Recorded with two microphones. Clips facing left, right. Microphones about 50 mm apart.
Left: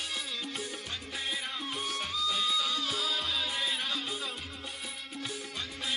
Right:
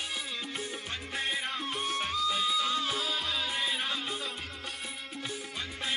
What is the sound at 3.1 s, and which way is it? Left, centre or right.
Music, centre.